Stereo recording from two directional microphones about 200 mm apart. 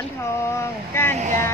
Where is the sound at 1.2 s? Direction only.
40° right (ahead or behind).